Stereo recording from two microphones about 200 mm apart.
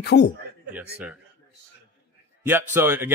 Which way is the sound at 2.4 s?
10° right (ahead or behind).